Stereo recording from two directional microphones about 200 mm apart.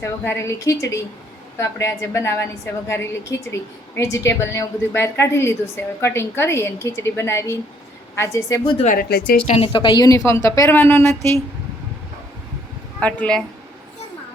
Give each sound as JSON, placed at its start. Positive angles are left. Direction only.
{"t": 0.0, "sound": "a woman's voice", "side_deg": 10}
{"t": 8.8, "sound": "speech", "side_deg": 45}
{"t": 9.6, "sound": "a woman's voice", "side_deg": 25}
{"t": 13.0, "sound": "speech", "side_deg": 5}